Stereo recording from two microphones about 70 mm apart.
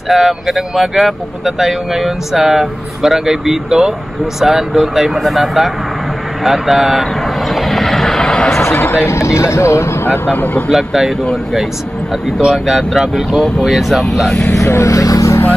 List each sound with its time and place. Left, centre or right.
0.1 s speech: centre
6.4 s vehicle: centre
8.8 s speech: left
10.7 s speech: centre
12.4 s speech: centre
14.5 s speech: left